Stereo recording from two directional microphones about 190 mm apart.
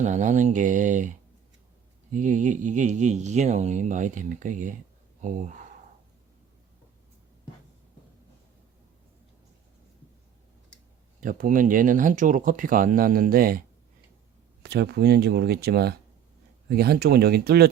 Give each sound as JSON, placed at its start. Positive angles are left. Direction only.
{"t": 0.0, "sound": "speech", "side_deg": -40}
{"t": 2.1, "sound": "speech", "side_deg": -40}
{"t": 11.2, "sound": "speech", "side_deg": -45}
{"t": 14.6, "sound": "speech", "side_deg": -60}